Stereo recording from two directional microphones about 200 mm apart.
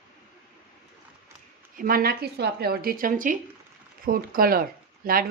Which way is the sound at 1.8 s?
45° right (ahead or behind).